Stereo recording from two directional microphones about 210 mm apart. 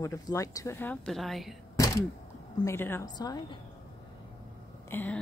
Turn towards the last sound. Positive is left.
turn(degrees=10)  # may be behind; listen again after turning